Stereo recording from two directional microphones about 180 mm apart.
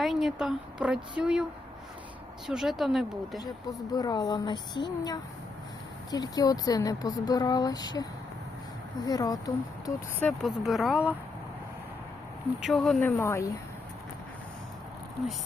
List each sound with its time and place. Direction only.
0.0 s speech: centre (ahead or behind)
2.5 s speech: centre (ahead or behind)
3.9 s speech: 20° left (ahead or behind)
9.0 s speech: 20° left (ahead or behind)
10.4 s speech: centre (ahead or behind)
12.6 s speech: centre (ahead or behind)